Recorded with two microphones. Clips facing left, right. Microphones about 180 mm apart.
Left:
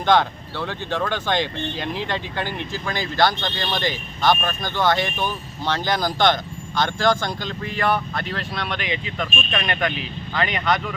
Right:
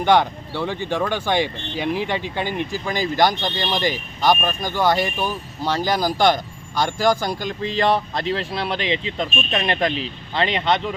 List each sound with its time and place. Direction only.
0.0 s speech: 15° right (ahead or behind)
7.8 s speech: 30° right (ahead or behind)